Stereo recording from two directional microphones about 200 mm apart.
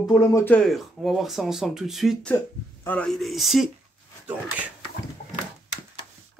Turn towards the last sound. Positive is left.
turn(degrees=-5)  # may be behind; listen again after turning